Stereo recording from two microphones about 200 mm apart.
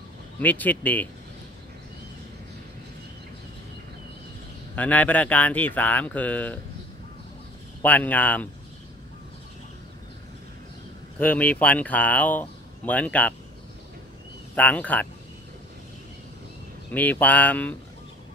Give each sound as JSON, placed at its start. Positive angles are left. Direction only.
{"t": 0.4, "sound": "speech", "side_deg": 10}
{"t": 4.7, "sound": "speech", "side_deg": 10}
{"t": 7.8, "sound": "speech", "side_deg": 10}
{"t": 11.1, "sound": "speech", "side_deg": 10}
{"t": 14.5, "sound": "speech", "side_deg": 5}
{"t": 16.9, "sound": "speech", "side_deg": 10}